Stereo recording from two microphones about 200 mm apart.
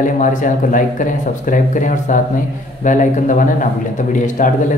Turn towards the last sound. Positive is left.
turn(degrees=40)  # may be behind; listen again after turning